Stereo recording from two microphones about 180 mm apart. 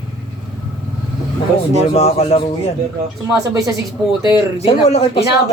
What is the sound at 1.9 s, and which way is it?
Speech, 35° left (ahead or behind).